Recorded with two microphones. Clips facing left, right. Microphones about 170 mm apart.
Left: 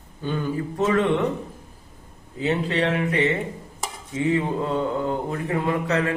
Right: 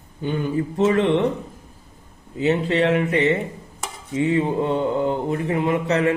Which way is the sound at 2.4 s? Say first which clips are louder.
Right 4 dB; 30° right (ahead or behind).